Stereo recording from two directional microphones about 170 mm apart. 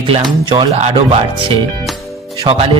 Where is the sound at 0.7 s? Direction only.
40° right (ahead or behind).